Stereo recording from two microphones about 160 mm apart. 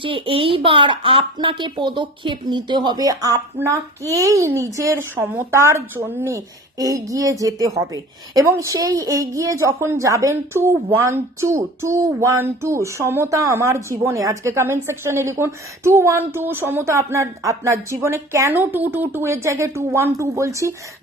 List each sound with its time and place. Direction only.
0.0 s speech: 35° right (ahead or behind); by 20.7 s 20° right (ahead or behind)